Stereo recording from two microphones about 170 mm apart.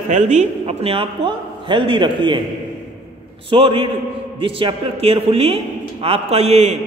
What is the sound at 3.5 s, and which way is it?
A man's voice, 30° right (ahead or behind).